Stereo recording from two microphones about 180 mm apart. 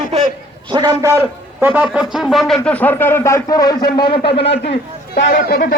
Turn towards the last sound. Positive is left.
turn(degrees=55)  # may be behind; listen again after turning